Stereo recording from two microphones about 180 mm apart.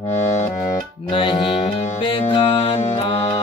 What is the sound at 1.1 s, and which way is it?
Music, 30° left (ahead or behind).